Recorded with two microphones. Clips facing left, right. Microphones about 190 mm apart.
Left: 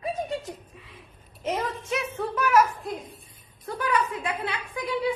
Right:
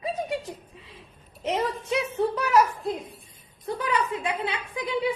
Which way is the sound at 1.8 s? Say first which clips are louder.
Right 4 dB; 25° right (ahead or behind).